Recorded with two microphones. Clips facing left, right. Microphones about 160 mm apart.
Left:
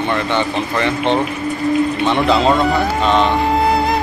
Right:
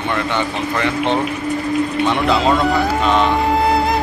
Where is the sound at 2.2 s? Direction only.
Centre (ahead or behind).